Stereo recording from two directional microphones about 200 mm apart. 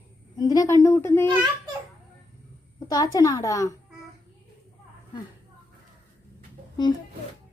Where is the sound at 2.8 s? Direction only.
20° left (ahead or behind).